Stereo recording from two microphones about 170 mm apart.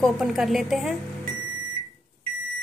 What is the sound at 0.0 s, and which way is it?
Speech, centre (ahead or behind).